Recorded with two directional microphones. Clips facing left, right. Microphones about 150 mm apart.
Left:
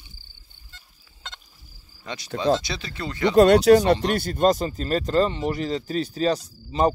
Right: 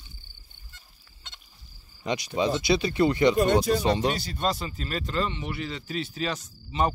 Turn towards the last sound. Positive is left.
turn(degrees=35)  # may be behind; listen again after turning